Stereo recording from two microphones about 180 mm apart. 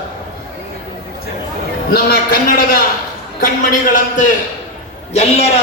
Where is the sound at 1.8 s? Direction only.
55° left (ahead or behind).